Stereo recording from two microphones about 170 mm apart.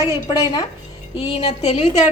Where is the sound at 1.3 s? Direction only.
35° left (ahead or behind).